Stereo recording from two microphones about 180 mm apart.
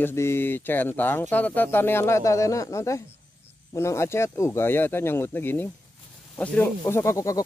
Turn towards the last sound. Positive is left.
turn(degrees=15)  # may be behind; listen again after turning